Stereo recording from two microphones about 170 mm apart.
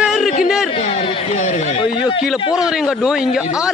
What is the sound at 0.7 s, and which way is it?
Speech, 35° left (ahead or behind).